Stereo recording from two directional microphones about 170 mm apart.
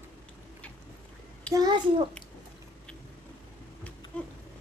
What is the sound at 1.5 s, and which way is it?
Speech, 25° right (ahead or behind).